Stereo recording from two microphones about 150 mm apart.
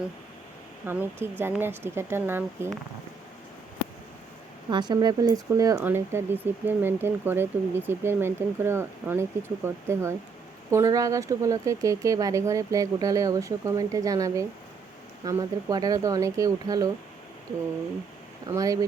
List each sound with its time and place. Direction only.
0.9 s speech: 15° right (ahead or behind)
4.7 s speech: 30° right (ahead or behind)
18.4 s speech: 25° right (ahead or behind)